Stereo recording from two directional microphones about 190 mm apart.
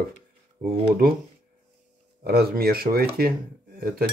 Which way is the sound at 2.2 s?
55° right (ahead or behind).